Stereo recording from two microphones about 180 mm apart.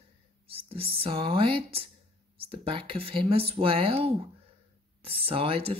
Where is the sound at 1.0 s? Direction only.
30° right (ahead or behind).